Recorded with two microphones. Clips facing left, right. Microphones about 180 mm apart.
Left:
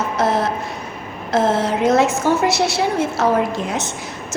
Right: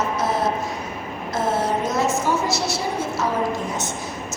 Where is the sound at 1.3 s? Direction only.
80° left.